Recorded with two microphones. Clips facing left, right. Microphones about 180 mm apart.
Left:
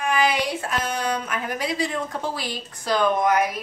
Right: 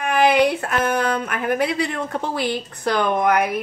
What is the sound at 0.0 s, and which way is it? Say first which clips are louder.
A woman's voice: right 6 dB; 60° right (ahead or behind).